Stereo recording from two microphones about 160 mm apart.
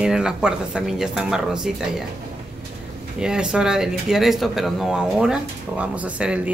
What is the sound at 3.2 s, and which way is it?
Speech, 5° right (ahead or behind).